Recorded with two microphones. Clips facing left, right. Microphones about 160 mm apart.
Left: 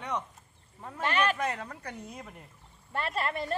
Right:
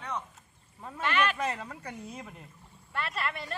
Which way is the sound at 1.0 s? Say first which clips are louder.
Left 1 dB; 40° left (ahead or behind).